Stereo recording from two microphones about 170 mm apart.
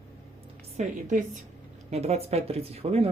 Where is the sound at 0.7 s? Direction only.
45° right (ahead or behind).